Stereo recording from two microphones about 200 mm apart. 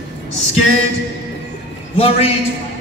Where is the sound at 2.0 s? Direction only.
30° left (ahead or behind).